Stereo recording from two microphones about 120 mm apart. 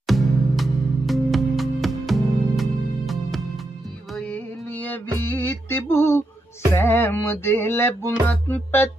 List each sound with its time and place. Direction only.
0.0 s music: centre (ahead or behind)
4.3 s music: 15° left (ahead or behind)